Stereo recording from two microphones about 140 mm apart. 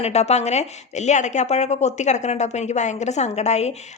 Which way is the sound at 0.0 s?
50° left (ahead or behind).